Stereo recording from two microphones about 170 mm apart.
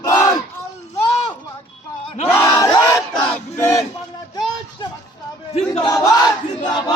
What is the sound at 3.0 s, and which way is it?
Battle cry, 5° left (ahead or behind).